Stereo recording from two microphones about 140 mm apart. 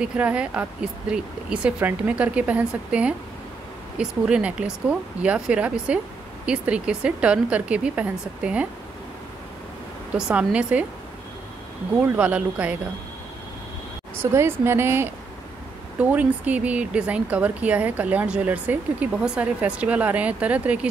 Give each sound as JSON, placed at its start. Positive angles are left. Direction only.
{"t": 0.0, "sound": "speech", "side_deg": -10}
{"t": 10.1, "sound": "speech", "side_deg": -5}
{"t": 12.2, "sound": "speech", "side_deg": -10}
{"t": 14.1, "sound": "speech", "side_deg": -15}